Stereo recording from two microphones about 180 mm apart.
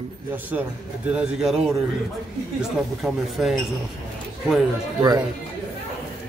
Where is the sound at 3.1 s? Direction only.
Centre (ahead or behind).